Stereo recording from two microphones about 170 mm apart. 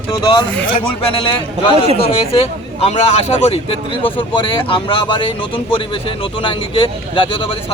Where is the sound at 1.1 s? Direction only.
35° left (ahead or behind).